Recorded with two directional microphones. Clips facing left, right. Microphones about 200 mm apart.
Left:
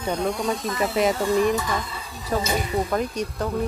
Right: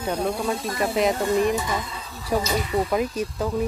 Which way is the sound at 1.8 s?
5° left (ahead or behind).